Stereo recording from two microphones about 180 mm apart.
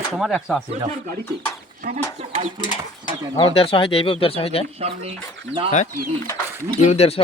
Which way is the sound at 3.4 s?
30° left (ahead or behind).